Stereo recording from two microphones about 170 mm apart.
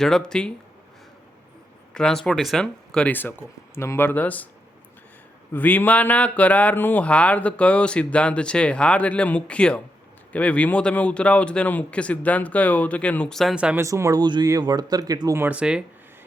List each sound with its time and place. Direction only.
0.0 s speech: 5° left (ahead or behind)
1.9 s speech: 5° left (ahead or behind)
5.5 s speech: 10° left (ahead or behind); by 13.8 s 5° right (ahead or behind)
13.8 s speech: 20° right (ahead or behind)